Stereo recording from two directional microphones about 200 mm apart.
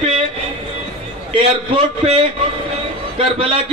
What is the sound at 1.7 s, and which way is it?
A man's voice, 25° right (ahead or behind).